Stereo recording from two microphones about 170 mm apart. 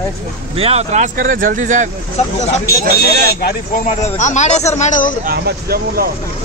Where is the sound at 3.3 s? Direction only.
65° left (ahead or behind); by 5.1 s 50° left (ahead or behind).